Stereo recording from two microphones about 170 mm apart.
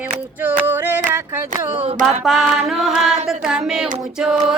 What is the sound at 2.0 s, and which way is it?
Child singing, centre (ahead or behind).